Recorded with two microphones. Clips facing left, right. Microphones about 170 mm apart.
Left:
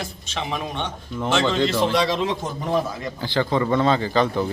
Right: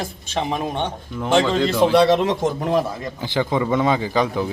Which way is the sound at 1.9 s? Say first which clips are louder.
Right 6 dB; 60° right (ahead or behind).